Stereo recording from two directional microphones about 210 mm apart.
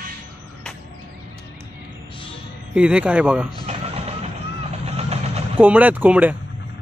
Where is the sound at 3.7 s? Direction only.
30° right (ahead or behind).